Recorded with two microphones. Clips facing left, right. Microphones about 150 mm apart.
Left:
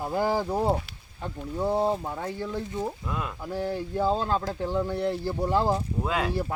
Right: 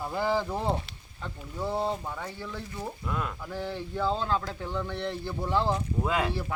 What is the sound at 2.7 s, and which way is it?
Speech, 15° left (ahead or behind).